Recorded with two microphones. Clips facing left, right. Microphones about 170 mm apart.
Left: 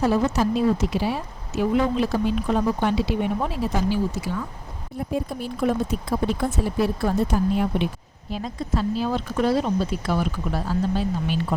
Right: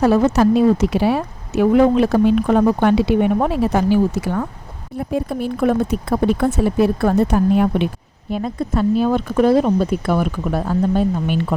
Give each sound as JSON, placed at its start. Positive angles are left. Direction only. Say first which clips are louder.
{"t": 0.0, "sound": "speech", "louder": "right 7 dB", "side_deg": -65}